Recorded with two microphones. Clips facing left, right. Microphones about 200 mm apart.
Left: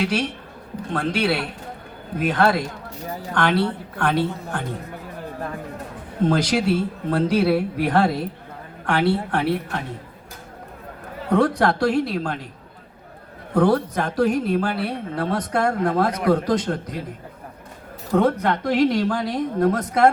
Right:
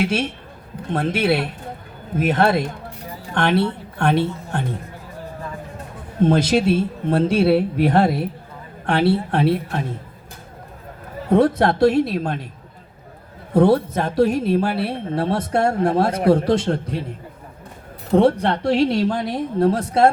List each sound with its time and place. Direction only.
0.0 s speech: 25° right (ahead or behind)
6.2 s speech: 25° right (ahead or behind)
11.3 s speech: 25° right (ahead or behind)
13.5 s speech: 25° right (ahead or behind)
18.1 s speech: 30° right (ahead or behind)